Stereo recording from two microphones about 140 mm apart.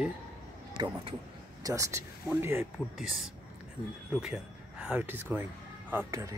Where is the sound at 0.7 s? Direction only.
35° right (ahead or behind).